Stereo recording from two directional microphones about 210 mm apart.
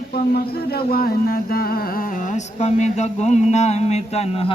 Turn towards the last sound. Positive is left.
turn(degrees=30)  # may be behind; listen again after turning